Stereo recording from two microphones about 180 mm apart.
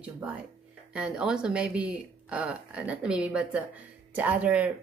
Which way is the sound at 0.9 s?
5° right (ahead or behind).